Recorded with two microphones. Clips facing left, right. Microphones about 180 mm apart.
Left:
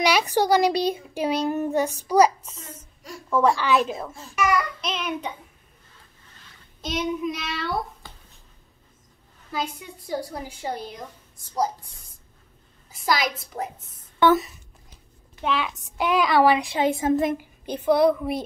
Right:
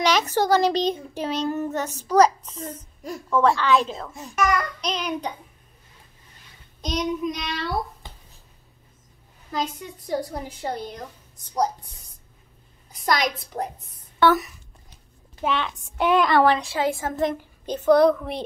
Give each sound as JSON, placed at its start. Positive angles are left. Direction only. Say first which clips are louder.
{"t": 0.0, "sound": "a child's voice", "louder": "even", "side_deg": 10}
{"t": 4.4, "sound": "child singing", "louder": "even", "side_deg": 10}
{"t": 6.8, "sound": "child singing", "louder": "right 1 dB", "side_deg": 5}
{"t": 9.5, "sound": "a child's voice", "louder": "right 2 dB", "side_deg": 5}
{"t": 12.9, "sound": "child singing", "louder": "right 1 dB", "side_deg": 5}
{"t": 14.2, "sound": "speech", "louder": "left 1 dB", "side_deg": 25}
{"t": 15.4, "sound": "child singing", "louder": "even", "side_deg": 5}
{"t": 16.0, "sound": "a child's voice", "louder": "right 1 dB", "side_deg": 0}